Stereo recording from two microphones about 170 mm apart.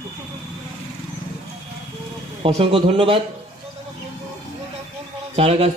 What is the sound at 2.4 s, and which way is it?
Speech, 30° right (ahead or behind).